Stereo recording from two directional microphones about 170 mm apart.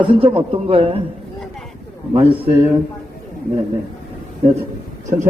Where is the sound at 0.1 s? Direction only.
30° right (ahead or behind).